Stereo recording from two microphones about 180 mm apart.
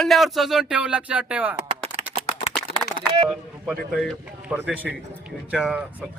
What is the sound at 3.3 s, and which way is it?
Speech, 5° right (ahead or behind).